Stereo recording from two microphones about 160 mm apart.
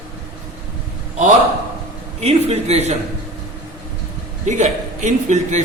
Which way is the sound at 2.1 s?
40° right (ahead or behind).